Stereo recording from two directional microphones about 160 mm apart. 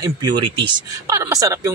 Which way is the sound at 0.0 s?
30° right (ahead or behind).